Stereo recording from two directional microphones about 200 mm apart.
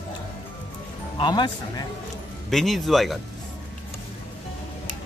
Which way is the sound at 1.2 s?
20° left (ahead or behind).